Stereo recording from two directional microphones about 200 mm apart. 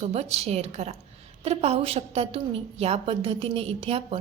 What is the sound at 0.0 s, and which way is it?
A woman's voice, 30° right (ahead or behind).